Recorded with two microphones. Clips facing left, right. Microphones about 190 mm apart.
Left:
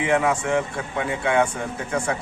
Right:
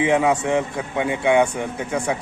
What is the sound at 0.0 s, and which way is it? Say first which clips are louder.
A man's voice: right 3 dB; 20° right (ahead or behind).